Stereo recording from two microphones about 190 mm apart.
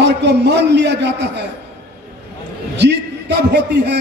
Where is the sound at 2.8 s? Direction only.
65° right (ahead or behind).